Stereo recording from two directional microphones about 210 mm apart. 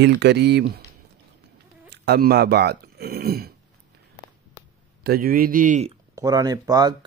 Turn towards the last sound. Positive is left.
turn(degrees=-15)  # may be behind; listen again after turning